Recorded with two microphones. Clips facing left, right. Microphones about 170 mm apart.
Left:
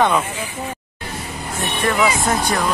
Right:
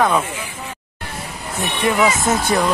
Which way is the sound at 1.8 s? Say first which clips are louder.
Right 1 dB; 10° right (ahead or behind).